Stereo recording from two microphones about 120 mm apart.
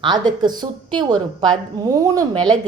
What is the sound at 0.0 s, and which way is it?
A woman's voice, 35° right (ahead or behind).